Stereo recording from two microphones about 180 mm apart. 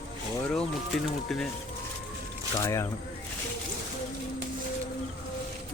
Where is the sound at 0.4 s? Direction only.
Centre (ahead or behind).